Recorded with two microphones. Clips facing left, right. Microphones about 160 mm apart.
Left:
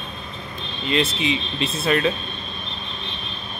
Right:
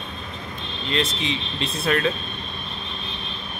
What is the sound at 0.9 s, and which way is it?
Speech, 5° left (ahead or behind).